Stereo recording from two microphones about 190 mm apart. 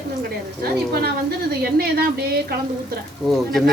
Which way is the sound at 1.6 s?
55° right (ahead or behind).